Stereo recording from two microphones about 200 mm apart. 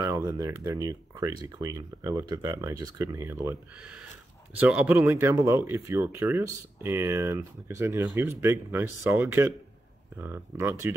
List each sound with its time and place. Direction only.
0.0 s speech: 15° right (ahead or behind)
4.6 s speech: 5° right (ahead or behind)
10.6 s speech: 10° right (ahead or behind)